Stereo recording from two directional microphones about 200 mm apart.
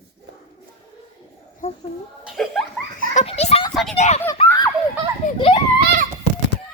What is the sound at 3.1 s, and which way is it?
Children playing, 30° left (ahead or behind).